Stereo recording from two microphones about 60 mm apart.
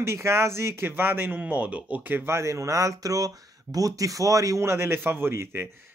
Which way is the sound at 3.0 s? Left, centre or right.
Right.